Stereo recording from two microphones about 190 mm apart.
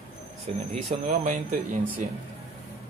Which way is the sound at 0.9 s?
40° right (ahead or behind).